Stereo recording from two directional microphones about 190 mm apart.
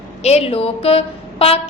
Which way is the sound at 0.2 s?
35° left (ahead or behind).